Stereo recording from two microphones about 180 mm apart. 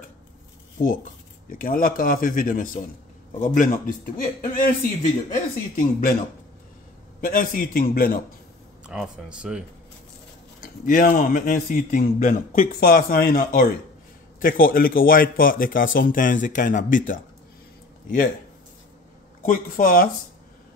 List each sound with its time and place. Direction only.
1.5 s a man's voice: 50° left (ahead or behind)
7.2 s a man's voice: 50° left (ahead or behind)
8.8 s speech: 5° right (ahead or behind)
10.9 s a man's voice: 50° left (ahead or behind)
19.4 s a man's voice: 50° left (ahead or behind)